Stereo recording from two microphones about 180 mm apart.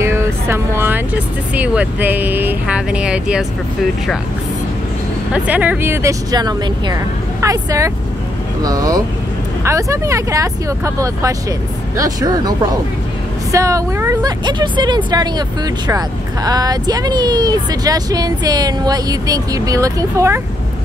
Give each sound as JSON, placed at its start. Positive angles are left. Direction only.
{"t": 0.0, "sound": "speech", "side_deg": -15}
{"t": 5.3, "sound": "speech", "side_deg": -10}